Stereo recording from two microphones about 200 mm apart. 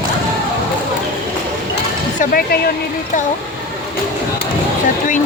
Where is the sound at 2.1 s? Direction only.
45° left (ahead or behind).